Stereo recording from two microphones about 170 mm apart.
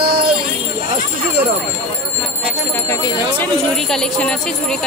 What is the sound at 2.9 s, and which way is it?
Speech, 15° left (ahead or behind).